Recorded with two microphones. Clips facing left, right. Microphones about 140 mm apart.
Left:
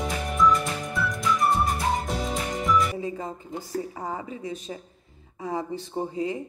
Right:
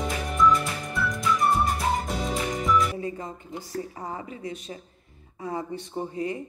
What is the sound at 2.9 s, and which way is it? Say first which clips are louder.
Music: left 1 dB; 25° left (ahead or behind).